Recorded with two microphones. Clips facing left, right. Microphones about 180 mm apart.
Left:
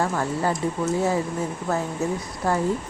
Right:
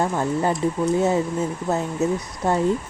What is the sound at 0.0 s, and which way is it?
Speech, 20° right (ahead or behind).